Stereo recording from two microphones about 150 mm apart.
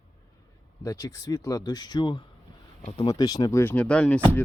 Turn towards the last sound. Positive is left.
turn(degrees=10)  # may be behind; listen again after turning